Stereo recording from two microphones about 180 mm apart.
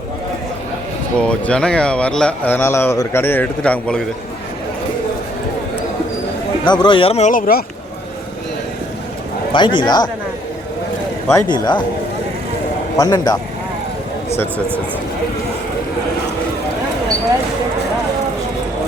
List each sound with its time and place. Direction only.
1.2 s a man's voice: 5° left (ahead or behind)
6.7 s speech: 25° left (ahead or behind); by 7.6 s 50° left (ahead or behind)
9.5 s speech: 25° left (ahead or behind)
11.3 s speech: 20° left (ahead or behind)
13.0 s speech: 20° left (ahead or behind)